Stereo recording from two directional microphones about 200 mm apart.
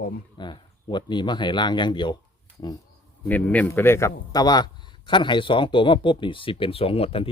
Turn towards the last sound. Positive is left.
turn(degrees=30)  # may be behind; listen again after turning